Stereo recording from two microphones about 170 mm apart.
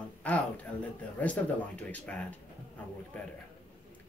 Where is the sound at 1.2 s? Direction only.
10° left (ahead or behind).